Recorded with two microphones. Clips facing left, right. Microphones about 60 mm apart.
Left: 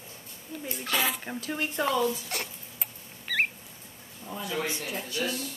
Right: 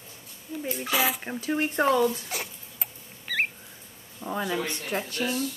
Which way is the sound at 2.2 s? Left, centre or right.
Centre.